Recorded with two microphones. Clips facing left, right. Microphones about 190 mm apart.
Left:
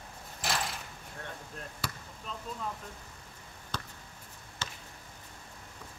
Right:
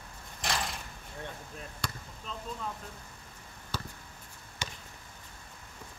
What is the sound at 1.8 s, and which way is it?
Basketball bounce, 5° left (ahead or behind).